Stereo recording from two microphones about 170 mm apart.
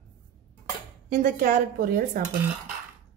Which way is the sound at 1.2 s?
50° right (ahead or behind).